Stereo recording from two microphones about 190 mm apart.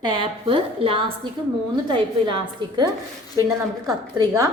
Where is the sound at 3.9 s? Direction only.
20° right (ahead or behind).